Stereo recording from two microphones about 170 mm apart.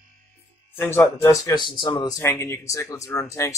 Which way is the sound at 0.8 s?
15° left (ahead or behind).